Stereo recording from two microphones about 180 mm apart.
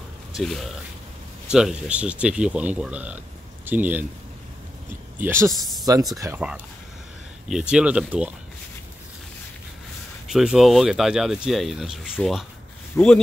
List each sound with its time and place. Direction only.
0.4 s speech: centre (ahead or behind)
5.2 s speech: 15° right (ahead or behind)
5.5 s speech: centre (ahead or behind)
6.1 s speech: 15° right (ahead or behind)
7.4 s speech: 5° right (ahead or behind)
10.2 s a man's voice: 5° right (ahead or behind)